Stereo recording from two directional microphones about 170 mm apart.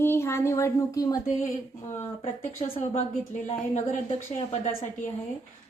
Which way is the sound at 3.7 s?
45° left (ahead or behind).